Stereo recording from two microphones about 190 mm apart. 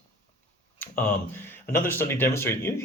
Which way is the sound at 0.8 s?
10° left (ahead or behind).